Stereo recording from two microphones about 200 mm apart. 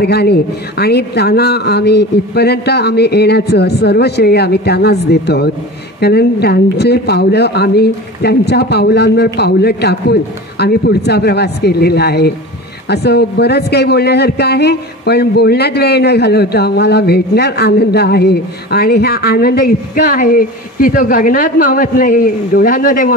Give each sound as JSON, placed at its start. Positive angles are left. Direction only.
{"t": 0.0, "sound": "a man's voice", "side_deg": 55}